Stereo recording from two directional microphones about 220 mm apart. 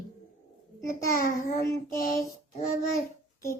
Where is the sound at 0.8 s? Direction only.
40° left (ahead or behind).